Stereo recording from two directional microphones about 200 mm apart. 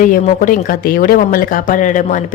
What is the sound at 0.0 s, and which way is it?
A woman's voice, 40° left (ahead or behind).